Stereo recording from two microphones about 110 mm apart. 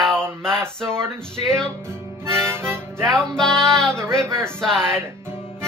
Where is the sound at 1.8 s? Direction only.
25° right (ahead or behind).